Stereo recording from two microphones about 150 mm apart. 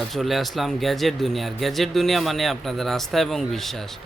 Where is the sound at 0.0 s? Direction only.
Centre (ahead or behind).